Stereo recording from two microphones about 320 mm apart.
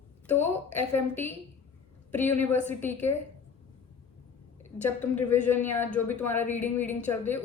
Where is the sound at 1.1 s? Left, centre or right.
Centre.